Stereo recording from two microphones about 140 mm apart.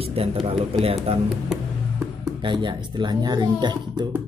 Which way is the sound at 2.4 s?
35° right (ahead or behind).